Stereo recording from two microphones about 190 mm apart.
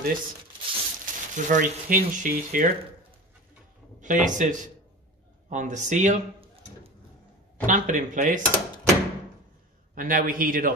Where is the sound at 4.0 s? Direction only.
40° right (ahead or behind).